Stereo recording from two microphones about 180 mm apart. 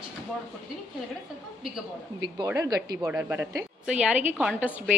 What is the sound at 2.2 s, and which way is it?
A woman's voice, 20° right (ahead or behind).